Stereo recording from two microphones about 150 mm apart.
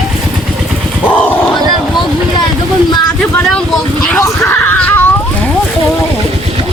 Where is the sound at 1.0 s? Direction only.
10° left (ahead or behind).